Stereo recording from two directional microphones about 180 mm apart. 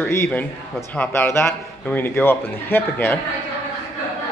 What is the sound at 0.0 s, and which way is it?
A man's voice, 10° left (ahead or behind).